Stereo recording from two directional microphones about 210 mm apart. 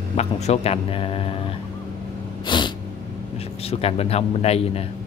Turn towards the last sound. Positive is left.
turn(degrees=30)  # may be behind; listen again after turning